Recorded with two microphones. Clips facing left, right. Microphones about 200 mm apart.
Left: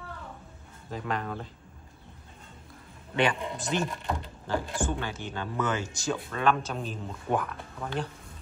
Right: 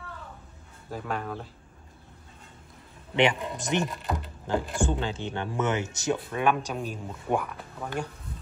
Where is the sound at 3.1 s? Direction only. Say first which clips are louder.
Right 3 dB; 20° right (ahead or behind).